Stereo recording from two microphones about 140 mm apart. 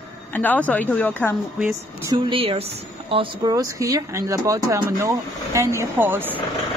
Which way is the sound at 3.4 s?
25° right (ahead or behind).